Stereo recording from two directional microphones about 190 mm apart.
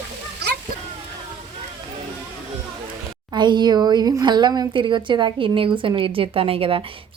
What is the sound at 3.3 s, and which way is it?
Speech, 25° right (ahead or behind).